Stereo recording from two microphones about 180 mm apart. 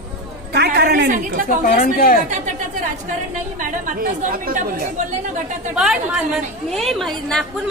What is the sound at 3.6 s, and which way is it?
A woman's voice, 50° right (ahead or behind).